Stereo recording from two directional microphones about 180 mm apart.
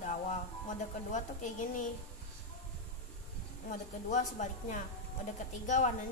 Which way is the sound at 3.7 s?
45° left (ahead or behind).